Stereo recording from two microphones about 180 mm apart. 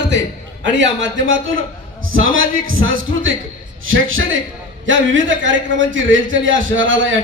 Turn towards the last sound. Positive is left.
turn(degrees=-90)